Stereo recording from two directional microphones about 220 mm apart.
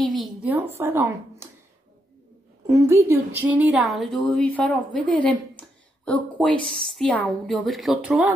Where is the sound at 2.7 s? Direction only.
15° right (ahead or behind).